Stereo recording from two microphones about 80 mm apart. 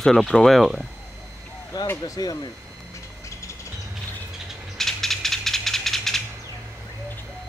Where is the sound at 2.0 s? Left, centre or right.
Left.